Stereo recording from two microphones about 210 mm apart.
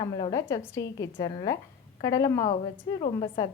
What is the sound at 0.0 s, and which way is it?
A woman's voice, 20° left (ahead or behind).